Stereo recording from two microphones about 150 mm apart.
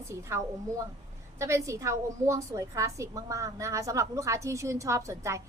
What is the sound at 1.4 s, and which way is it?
A woman's voice, 20° right (ahead or behind).